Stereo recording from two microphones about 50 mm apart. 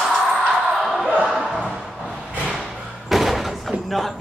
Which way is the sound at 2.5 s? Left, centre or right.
Centre.